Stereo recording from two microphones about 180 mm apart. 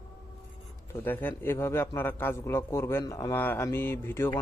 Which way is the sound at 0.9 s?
10° left (ahead or behind).